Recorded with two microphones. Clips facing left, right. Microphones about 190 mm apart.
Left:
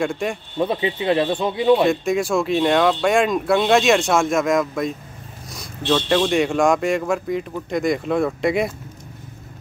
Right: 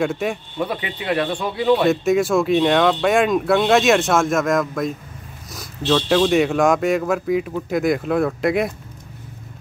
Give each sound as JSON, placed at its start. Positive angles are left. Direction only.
{"t": 0.0, "sound": "speech", "side_deg": -5}
{"t": 0.6, "sound": "speech", "side_deg": 25}
{"t": 1.9, "sound": "speech", "side_deg": 0}